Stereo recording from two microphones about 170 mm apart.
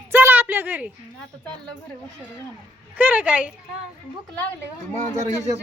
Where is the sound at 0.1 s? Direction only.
10° right (ahead or behind).